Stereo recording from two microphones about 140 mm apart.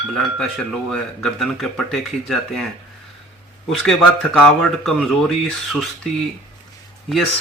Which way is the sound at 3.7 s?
5° left (ahead or behind).